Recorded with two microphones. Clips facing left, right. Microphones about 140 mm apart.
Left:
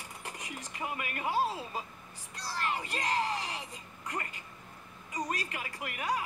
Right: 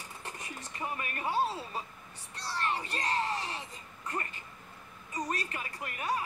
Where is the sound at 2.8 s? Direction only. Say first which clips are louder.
Left 1 dB; 20° left (ahead or behind).